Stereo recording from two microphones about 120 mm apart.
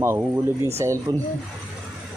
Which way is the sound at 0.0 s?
20° right (ahead or behind).